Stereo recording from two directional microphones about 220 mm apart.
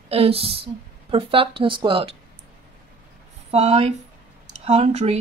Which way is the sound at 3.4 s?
30° right (ahead or behind).